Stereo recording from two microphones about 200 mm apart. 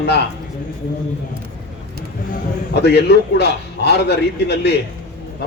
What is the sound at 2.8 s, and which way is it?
A man's voice, 55° left (ahead or behind).